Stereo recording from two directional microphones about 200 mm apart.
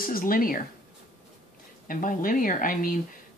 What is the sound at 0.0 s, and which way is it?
Speech, 45° left (ahead or behind).